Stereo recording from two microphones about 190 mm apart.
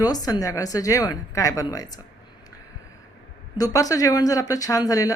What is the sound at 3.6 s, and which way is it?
Speech, 20° left (ahead or behind).